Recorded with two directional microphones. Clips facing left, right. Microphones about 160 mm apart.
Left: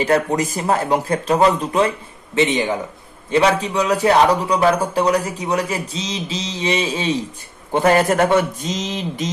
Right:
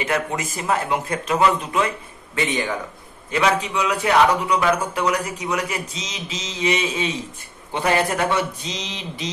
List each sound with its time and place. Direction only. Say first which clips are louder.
0.0 s a man's voice: left 7 dB; 35° left (ahead or behind)
2.3 s speech: left 6 dB; 20° left (ahead or behind)
3.3 s a man's voice: left 4 dB; 35° left (ahead or behind)
7.7 s a man's voice: left 6 dB; 45° left (ahead or behind)